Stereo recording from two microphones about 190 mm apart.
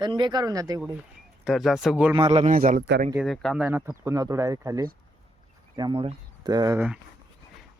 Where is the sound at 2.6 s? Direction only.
45° right (ahead or behind).